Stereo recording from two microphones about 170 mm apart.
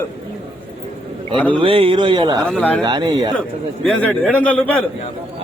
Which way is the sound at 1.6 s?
30° right (ahead or behind).